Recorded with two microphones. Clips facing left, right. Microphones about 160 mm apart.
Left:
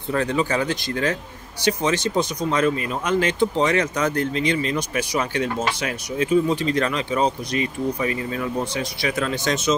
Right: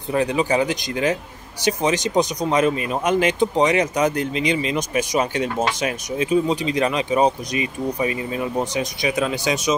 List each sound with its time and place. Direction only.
0.1 s speech: 15° right (ahead or behind)